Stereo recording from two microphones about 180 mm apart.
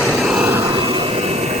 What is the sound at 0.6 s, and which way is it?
Vehicle, 30° right (ahead or behind).